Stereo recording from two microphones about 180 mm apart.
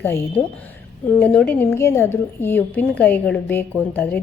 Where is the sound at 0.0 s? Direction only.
10° left (ahead or behind).